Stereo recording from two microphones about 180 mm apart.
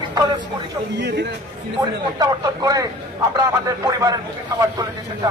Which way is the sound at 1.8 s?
20° right (ahead or behind).